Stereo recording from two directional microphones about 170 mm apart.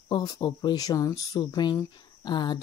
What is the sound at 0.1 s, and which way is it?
Speech, 25° left (ahead or behind).